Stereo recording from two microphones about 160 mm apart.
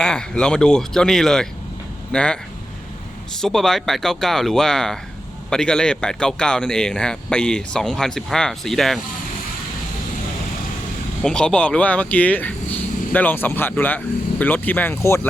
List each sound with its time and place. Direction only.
0.0 s speech: 5° left (ahead or behind)
11.2 s speech: 5° left (ahead or behind)